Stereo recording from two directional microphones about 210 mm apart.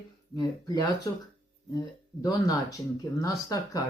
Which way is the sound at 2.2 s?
15° left (ahead or behind).